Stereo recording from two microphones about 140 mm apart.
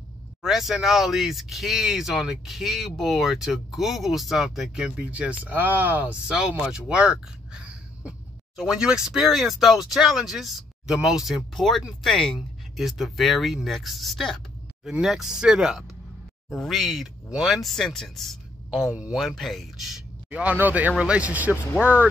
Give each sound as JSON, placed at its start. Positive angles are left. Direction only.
{"t": 0.4, "sound": "speech", "side_deg": 0}